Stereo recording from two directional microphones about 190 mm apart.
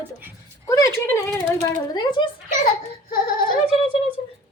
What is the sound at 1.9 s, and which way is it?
Speech, 25° left (ahead or behind).